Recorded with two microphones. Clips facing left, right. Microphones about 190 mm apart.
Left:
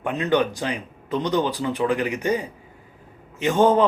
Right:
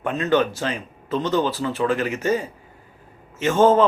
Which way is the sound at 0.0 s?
15° left (ahead or behind).